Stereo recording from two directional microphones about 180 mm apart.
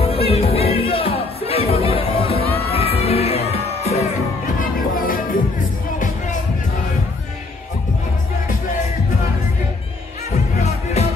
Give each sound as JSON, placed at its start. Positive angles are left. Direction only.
{"t": 0.0, "sound": "music", "side_deg": 35}
{"t": 4.6, "sound": "music", "side_deg": 50}
{"t": 10.6, "sound": "music", "side_deg": 40}